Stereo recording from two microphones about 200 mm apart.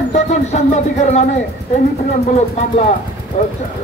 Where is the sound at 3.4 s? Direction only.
35° left (ahead or behind).